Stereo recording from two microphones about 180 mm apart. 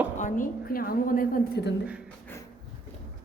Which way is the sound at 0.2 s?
45° left (ahead or behind).